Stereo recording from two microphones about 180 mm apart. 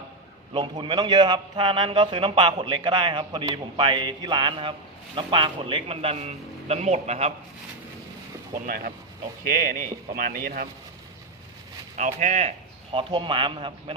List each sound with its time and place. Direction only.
0.5 s a man's voice: 25° right (ahead or behind)
8.6 s a man's voice: 55° right (ahead or behind)
11.9 s a man's voice: 45° right (ahead or behind); by 13.9 s 30° right (ahead or behind)